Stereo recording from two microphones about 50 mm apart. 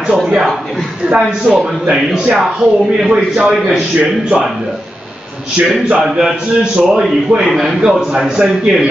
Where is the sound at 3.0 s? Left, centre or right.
Centre.